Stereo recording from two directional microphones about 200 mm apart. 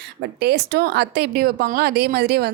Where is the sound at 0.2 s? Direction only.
55° right (ahead or behind).